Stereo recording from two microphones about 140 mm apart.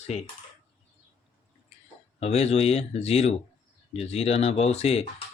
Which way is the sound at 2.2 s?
50° left (ahead or behind).